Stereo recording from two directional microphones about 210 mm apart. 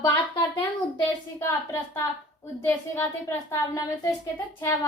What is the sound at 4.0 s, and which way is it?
Speech, 15° left (ahead or behind).